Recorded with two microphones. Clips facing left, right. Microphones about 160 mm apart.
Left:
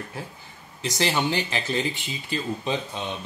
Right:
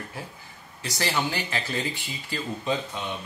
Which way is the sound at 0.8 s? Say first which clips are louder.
Left 3 dB; 20° left (ahead or behind).